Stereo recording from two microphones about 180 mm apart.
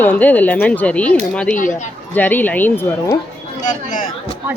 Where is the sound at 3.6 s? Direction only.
45° left (ahead or behind).